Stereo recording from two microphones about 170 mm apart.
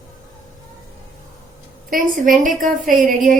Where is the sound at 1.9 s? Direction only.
50° right (ahead or behind).